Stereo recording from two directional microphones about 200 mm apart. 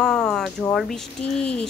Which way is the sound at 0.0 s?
5° left (ahead or behind).